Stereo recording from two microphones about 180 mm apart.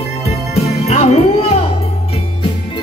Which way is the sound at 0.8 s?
35° left (ahead or behind).